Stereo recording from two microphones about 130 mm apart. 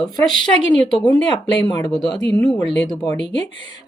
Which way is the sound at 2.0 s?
30° left (ahead or behind).